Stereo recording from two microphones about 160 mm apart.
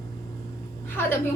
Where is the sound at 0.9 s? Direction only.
15° left (ahead or behind).